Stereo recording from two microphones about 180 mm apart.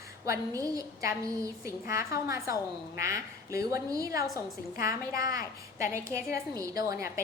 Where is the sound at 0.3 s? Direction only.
20° right (ahead or behind).